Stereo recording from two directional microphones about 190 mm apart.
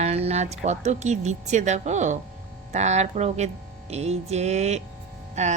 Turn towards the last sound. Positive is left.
turn(degrees=-35)  # may be behind; listen again after turning